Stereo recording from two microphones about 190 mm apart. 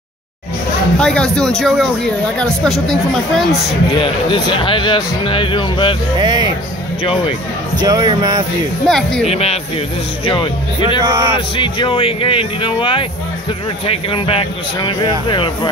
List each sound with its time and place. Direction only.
0.9 s speech: 5° left (ahead or behind)
3.9 s speech: 25° left (ahead or behind)
6.1 s speech: 20° right (ahead or behind)
7.0 s speech: 30° left (ahead or behind)
7.8 s speech: 20° right (ahead or behind)
8.8 s speech: centre (ahead or behind)
9.3 s speech: 30° left (ahead or behind)
11.0 s speech: 20° right (ahead or behind)
11.3 s speech: 25° left (ahead or behind)